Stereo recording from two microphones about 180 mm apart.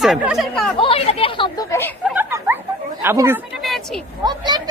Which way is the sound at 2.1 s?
10° right (ahead or behind).